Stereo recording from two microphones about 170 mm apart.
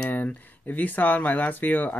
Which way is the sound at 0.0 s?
10° left (ahead or behind).